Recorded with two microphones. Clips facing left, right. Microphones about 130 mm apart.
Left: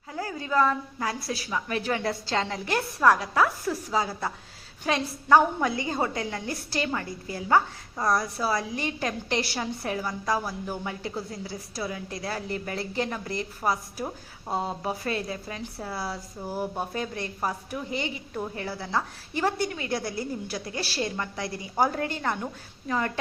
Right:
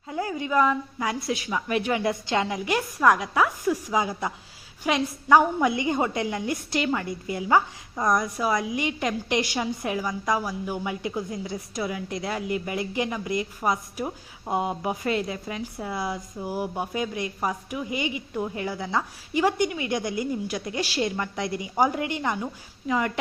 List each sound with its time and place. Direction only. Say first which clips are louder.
0.1 s a woman's voice: right 3 dB; 20° right (ahead or behind)